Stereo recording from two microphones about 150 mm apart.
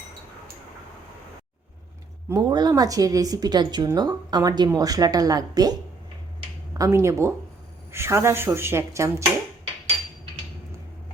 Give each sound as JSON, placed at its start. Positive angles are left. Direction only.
{"t": 2.3, "sound": "speech", "side_deg": -25}
{"t": 6.7, "sound": "speech", "side_deg": -20}